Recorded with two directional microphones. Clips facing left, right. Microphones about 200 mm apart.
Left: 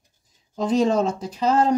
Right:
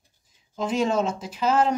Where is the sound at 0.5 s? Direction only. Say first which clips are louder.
Left 4 dB; 35° left (ahead or behind).